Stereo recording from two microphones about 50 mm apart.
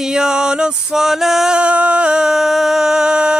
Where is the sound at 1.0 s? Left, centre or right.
Centre.